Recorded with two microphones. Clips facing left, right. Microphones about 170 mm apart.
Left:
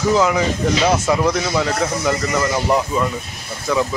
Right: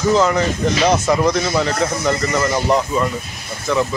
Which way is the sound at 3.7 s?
10° left (ahead or behind).